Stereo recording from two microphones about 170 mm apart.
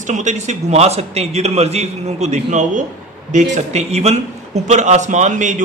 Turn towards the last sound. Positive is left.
turn(degrees=-45)  # may be behind; listen again after turning